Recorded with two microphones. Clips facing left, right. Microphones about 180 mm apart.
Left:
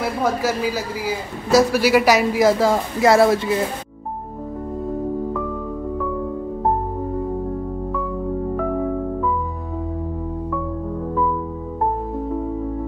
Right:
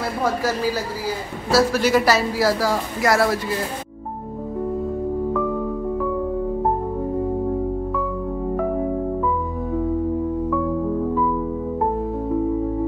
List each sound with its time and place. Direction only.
0.2 s a woman's voice: 5° left (ahead or behind); by 3.5 s 25° left (ahead or behind)